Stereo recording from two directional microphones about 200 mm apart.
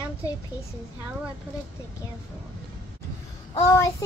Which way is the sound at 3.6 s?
15° left (ahead or behind).